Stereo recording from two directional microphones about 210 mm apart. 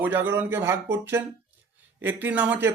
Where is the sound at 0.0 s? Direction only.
10° right (ahead or behind).